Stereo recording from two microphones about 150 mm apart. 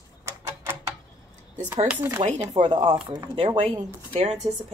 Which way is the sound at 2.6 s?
35° right (ahead or behind).